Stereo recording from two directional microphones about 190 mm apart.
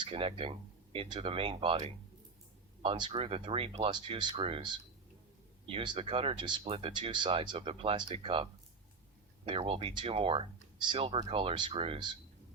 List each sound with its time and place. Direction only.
0.0 s speech: 30° right (ahead or behind)
9.5 s speech: 30° right (ahead or behind)